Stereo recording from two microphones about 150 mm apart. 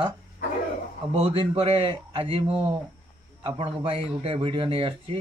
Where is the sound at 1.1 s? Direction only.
35° right (ahead or behind).